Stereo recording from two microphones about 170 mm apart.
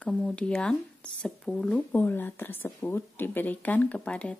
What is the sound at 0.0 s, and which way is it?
Speech, 5° left (ahead or behind).